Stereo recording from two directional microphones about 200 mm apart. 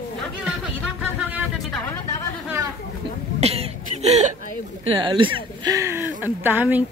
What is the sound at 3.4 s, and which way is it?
Cough, 30° right (ahead or behind).